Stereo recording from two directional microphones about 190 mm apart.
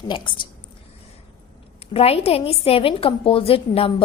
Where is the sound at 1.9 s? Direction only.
30° left (ahead or behind).